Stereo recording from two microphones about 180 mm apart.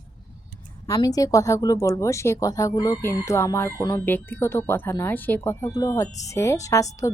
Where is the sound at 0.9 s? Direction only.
20° left (ahead or behind).